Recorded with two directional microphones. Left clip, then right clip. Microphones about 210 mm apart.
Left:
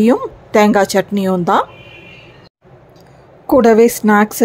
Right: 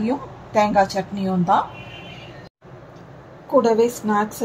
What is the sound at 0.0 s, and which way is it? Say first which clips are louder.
A woman's voice: left 12 dB; 40° left (ahead or behind).